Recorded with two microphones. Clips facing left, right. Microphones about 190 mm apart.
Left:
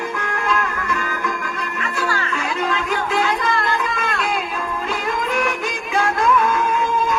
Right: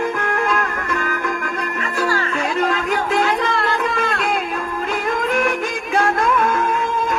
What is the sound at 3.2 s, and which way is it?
Music, 60° right (ahead or behind).